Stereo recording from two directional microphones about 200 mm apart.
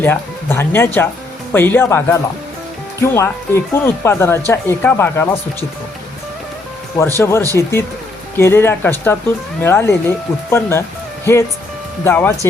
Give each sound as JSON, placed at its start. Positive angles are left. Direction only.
{"t": 0.0, "sound": "speech", "side_deg": 10}
{"t": 7.2, "sound": "speech", "side_deg": 15}